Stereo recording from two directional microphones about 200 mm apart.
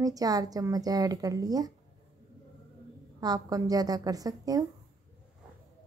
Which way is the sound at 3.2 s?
20° right (ahead or behind).